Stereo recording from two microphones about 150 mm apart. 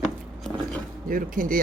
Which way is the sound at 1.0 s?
65° right (ahead or behind).